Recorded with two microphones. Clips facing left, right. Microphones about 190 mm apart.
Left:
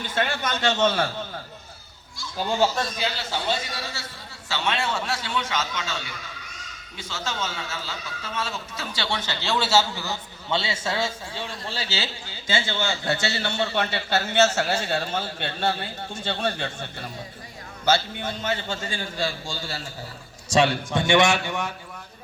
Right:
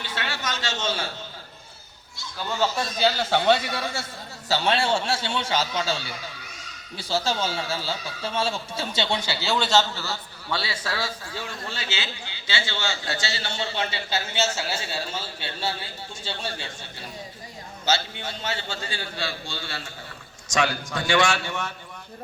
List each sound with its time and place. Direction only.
0.0 s a man's voice: 50° left (ahead or behind)
3.2 s a man's voice: 65° right (ahead or behind)
4.4 s a man's voice: 35° right (ahead or behind); by 16.7 s 55° left (ahead or behind)
17.8 s a man's voice: 55° left (ahead or behind)
20.5 s a man's voice: 30° left (ahead or behind)